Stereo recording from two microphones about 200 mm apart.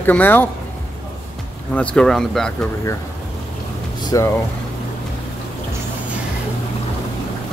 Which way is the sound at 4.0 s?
20° left (ahead or behind).